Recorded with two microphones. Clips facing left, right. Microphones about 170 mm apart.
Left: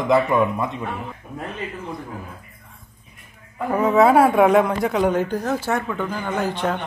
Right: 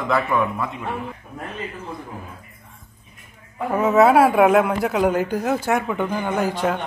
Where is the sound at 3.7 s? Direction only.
5° right (ahead or behind).